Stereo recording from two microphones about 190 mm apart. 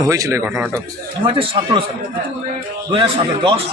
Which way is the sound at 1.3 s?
30° right (ahead or behind).